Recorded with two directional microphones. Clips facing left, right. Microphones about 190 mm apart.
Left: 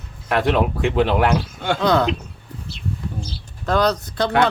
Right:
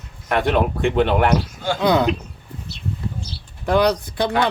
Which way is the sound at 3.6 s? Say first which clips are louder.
Right 2 dB; 15° right (ahead or behind).